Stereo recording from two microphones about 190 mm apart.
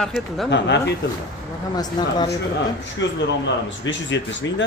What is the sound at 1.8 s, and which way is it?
Speech, 20° left (ahead or behind).